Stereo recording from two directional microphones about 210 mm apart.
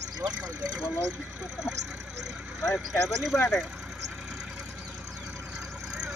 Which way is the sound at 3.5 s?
5° right (ahead or behind).